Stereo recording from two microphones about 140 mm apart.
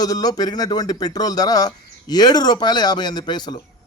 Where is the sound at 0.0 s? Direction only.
30° left (ahead or behind).